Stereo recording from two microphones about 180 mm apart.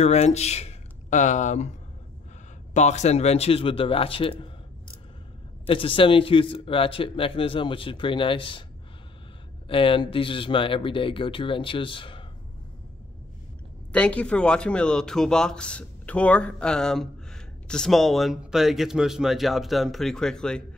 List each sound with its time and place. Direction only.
0.0 s speech: 35° left (ahead or behind)
5.7 s speech: 30° left (ahead or behind)
9.7 s speech: 30° left (ahead or behind)
13.9 s a man's voice: 5° left (ahead or behind)